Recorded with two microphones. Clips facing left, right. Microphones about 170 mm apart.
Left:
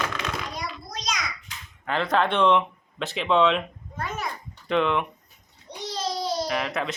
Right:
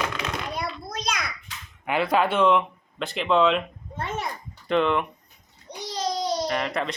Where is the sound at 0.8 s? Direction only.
55° right (ahead or behind).